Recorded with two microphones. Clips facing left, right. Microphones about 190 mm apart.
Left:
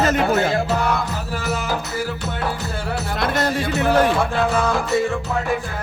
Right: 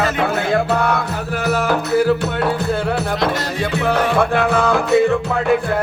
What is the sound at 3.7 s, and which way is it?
Music, 60° right (ahead or behind).